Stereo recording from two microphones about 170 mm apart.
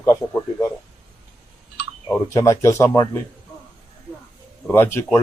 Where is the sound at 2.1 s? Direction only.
15° left (ahead or behind).